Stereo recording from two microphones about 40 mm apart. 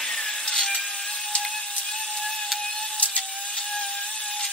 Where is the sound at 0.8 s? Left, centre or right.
Centre.